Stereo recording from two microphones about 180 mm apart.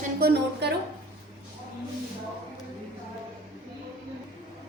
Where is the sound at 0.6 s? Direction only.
70° right (ahead or behind).